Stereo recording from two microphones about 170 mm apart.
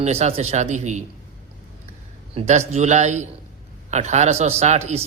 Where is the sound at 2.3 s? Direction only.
40° right (ahead or behind).